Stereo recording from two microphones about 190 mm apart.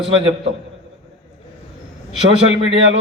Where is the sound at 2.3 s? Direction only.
85° right.